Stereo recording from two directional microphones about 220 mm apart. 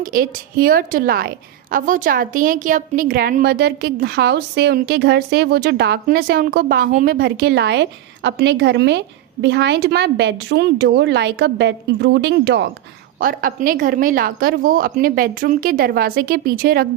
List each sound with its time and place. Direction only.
0.0 s a woman's voice: 40° right (ahead or behind)
13.1 s a woman's voice: 40° right (ahead or behind)